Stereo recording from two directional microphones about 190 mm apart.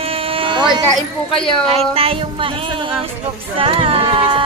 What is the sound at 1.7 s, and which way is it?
Speech, 30° right (ahead or behind).